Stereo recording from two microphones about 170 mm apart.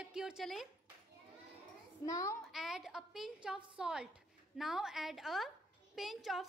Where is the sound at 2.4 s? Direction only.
Centre (ahead or behind).